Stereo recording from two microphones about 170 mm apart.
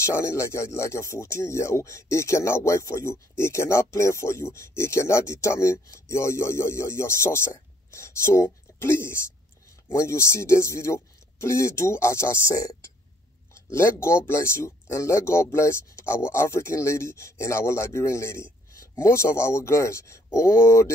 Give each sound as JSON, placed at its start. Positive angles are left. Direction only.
{"t": 0.0, "sound": "speech", "side_deg": 15}